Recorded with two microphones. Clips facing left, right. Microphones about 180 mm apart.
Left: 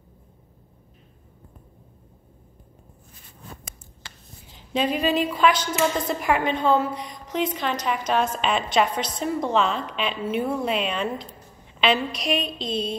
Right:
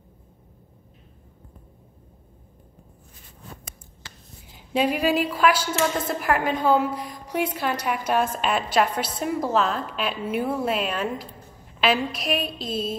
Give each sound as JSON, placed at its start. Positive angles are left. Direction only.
{"t": 4.6, "sound": "a woman's voice", "side_deg": -10}